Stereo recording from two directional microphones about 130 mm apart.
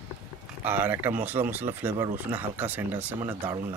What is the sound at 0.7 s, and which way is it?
Speech, 15° right (ahead or behind).